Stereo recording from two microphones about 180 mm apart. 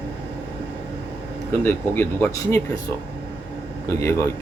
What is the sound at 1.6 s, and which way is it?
Speech, 10° left (ahead or behind).